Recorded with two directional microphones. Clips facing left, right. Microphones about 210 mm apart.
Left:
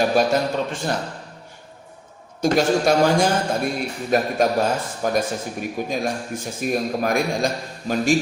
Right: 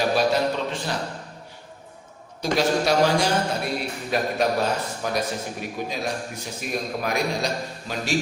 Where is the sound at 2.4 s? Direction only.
50° left (ahead or behind).